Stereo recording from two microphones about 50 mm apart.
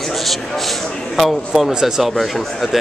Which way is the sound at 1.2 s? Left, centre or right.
Centre.